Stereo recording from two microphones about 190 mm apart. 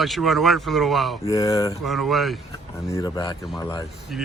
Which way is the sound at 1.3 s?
20° left (ahead or behind).